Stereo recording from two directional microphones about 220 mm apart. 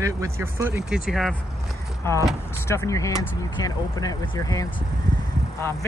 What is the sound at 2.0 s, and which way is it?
Speech, 10° left (ahead or behind).